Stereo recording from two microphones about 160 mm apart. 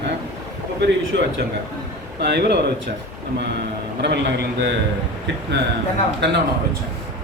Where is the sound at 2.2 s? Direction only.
90° right.